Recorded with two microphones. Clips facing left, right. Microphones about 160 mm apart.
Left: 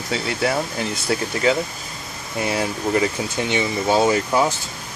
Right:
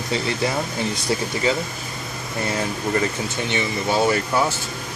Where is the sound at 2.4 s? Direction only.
10° left (ahead or behind).